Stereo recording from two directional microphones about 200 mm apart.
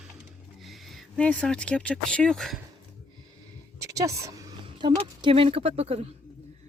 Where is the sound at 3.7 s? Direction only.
15° right (ahead or behind).